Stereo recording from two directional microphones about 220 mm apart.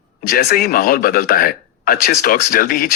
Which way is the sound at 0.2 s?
40° left (ahead or behind).